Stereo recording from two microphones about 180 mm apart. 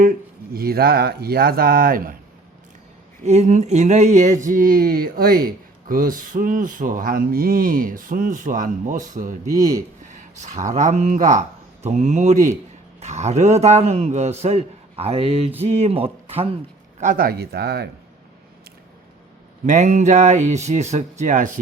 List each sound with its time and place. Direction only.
0.5 s speech: 60° right (ahead or behind)
3.2 s speech: 40° right (ahead or behind)
9.5 s speech: 20° right (ahead or behind)
10.0 s a sound: 45° right (ahead or behind)
10.8 s a man's voice: 40° right (ahead or behind)
17.0 s speech: 50° right (ahead or behind)
19.6 s a man's voice: 40° right (ahead or behind)